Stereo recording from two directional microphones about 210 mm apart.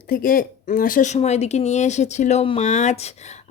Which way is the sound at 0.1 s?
45° left (ahead or behind).